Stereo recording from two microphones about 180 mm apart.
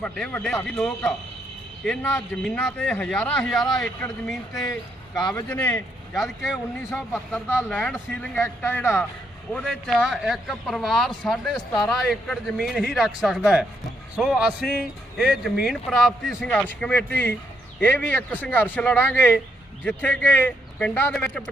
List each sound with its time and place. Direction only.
0.0 s a man's voice: 5° left (ahead or behind)
4.6 s speech: 20° left (ahead or behind)
5.5 s a man's voice: 5° left (ahead or behind)
7.3 s a man's voice: 10° left (ahead or behind)